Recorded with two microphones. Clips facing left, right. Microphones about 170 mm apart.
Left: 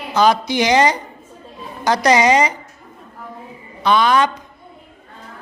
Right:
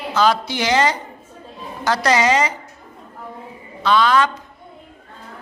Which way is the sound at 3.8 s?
15° left (ahead or behind).